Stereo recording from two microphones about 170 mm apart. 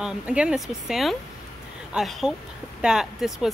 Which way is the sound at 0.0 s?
5° right (ahead or behind).